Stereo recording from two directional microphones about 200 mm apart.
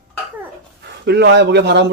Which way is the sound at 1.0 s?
55° right (ahead or behind).